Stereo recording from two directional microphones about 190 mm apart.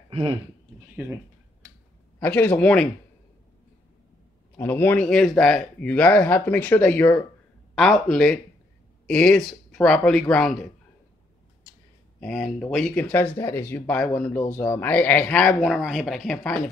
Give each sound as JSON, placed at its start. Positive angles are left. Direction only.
{"t": 0.1, "sound": "speech", "side_deg": -30}
{"t": 2.1, "sound": "speech", "side_deg": 10}
{"t": 4.6, "sound": "speech", "side_deg": 10}
{"t": 12.2, "sound": "speech", "side_deg": 0}